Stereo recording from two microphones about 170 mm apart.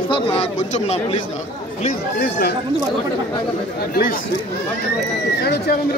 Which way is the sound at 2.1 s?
65° left (ahead or behind).